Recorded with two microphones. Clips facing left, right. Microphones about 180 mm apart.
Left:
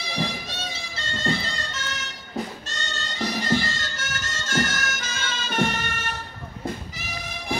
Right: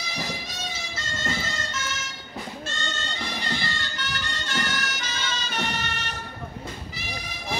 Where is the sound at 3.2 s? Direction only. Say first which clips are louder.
Left 10 dB; 40° left (ahead or behind).